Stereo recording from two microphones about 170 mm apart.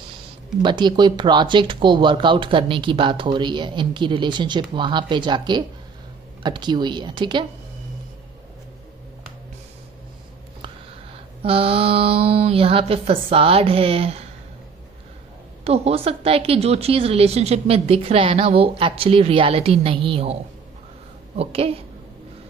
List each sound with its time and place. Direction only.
0.6 s speech: 25° right (ahead or behind)
11.4 s a woman's voice: 35° right (ahead or behind)
15.6 s a woman's voice: 35° right (ahead or behind)
21.4 s a woman's voice: 35° right (ahead or behind)